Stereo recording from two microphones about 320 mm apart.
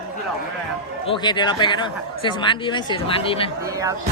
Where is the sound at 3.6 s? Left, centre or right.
Centre.